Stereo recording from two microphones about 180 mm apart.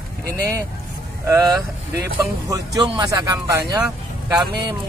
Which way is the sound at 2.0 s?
20° right (ahead or behind).